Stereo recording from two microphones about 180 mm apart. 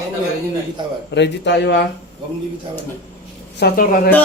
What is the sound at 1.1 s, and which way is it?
Speech, 75° left (ahead or behind).